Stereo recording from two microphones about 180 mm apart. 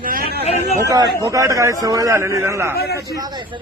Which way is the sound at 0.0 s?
55° right (ahead or behind).